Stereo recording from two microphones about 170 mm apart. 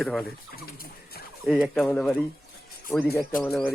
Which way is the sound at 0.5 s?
65° left (ahead or behind).